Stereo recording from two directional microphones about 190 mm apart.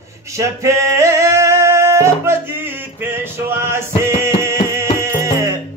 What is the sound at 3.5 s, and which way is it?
Music, 15° right (ahead or behind).